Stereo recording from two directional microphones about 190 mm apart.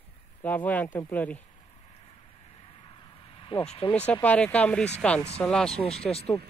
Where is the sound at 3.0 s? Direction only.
25° left (ahead or behind).